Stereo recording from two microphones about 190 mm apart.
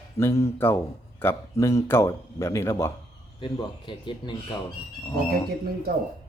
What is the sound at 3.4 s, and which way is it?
Speech, 25° left (ahead or behind).